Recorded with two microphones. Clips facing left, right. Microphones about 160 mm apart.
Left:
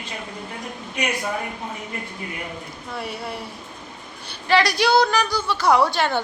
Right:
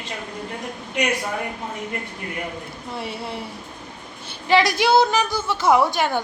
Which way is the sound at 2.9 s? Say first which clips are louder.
Even; 25° right (ahead or behind).